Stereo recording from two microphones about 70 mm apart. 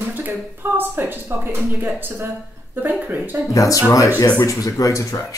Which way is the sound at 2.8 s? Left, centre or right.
Right.